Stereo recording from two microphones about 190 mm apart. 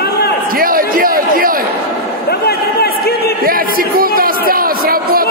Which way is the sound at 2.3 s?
55° left (ahead or behind).